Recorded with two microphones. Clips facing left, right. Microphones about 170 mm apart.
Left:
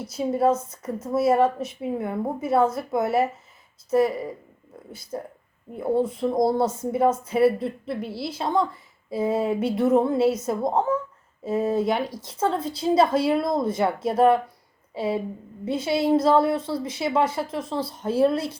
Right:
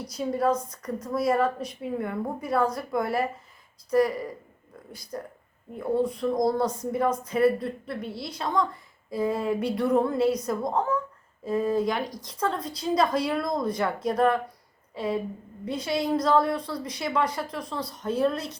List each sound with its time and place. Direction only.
0.2 s speech: 25° left (ahead or behind)
6.0 s speech: centre (ahead or behind)
6.2 s a woman's voice: 25° left (ahead or behind)